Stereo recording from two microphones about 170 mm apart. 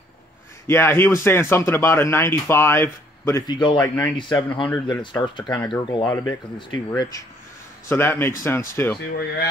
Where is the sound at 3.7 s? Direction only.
10° left (ahead or behind).